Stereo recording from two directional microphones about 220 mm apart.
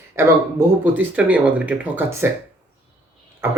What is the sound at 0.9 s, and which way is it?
Speech, 5° right (ahead or behind).